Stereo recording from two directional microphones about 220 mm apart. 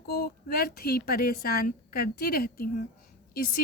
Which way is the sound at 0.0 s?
45° left (ahead or behind).